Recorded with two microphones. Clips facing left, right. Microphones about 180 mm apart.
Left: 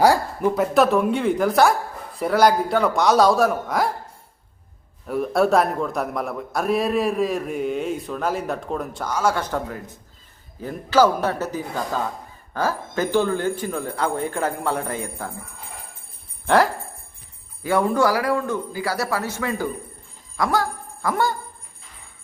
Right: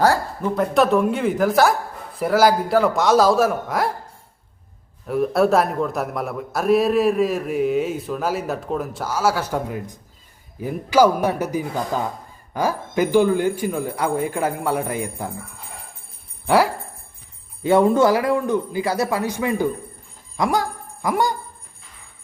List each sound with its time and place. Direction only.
0.0 s a man's voice: 10° left (ahead or behind)
5.0 s a man's voice: centre (ahead or behind)
16.5 s speech: 10° right (ahead or behind)
17.6 s a man's voice: 25° right (ahead or behind)
20.3 s a sound: 20° right (ahead or behind)